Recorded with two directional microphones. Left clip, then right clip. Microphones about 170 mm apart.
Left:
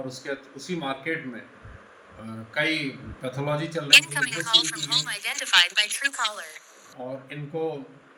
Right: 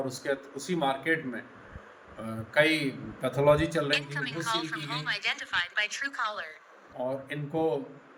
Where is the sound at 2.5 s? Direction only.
35° right (ahead or behind).